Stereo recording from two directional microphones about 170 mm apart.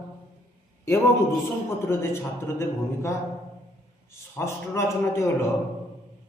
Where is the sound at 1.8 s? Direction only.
15° left (ahead or behind).